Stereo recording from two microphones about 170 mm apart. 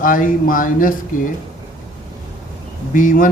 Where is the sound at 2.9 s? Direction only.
50° left (ahead or behind).